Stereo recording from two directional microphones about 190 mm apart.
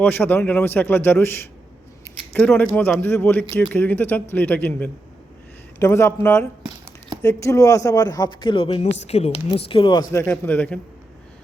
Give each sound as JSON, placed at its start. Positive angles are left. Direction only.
{"t": 0.0, "sound": "a man's voice", "side_deg": 10}